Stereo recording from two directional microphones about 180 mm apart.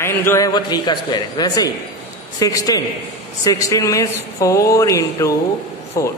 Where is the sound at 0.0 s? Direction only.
15° left (ahead or behind).